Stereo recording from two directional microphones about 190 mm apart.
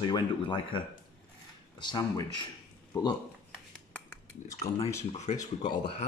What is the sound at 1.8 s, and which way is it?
Speech, 25° left (ahead or behind).